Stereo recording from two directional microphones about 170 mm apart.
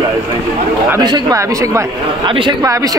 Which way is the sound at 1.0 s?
20° right (ahead or behind).